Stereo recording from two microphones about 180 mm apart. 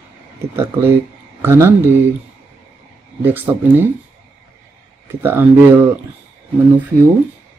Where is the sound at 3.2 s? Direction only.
10° right (ahead or behind).